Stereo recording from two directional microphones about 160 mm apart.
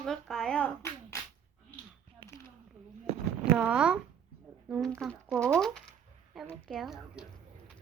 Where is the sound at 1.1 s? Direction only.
20° left (ahead or behind).